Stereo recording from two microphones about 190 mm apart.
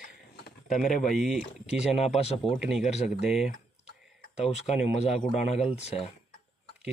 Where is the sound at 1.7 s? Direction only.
35° left (ahead or behind).